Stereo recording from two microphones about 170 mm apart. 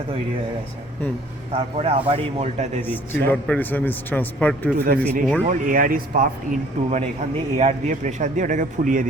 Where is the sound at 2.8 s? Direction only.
10° left (ahead or behind).